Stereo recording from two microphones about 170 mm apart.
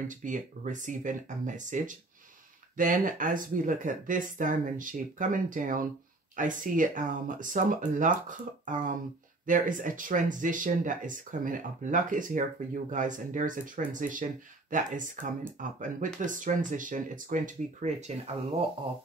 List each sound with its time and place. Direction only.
0.1 s speech: 50° right (ahead or behind)